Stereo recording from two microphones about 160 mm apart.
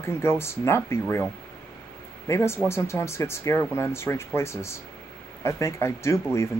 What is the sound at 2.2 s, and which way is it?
Speech, 15° left (ahead or behind).